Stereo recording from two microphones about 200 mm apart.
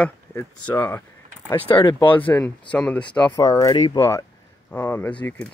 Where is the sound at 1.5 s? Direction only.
25° left (ahead or behind).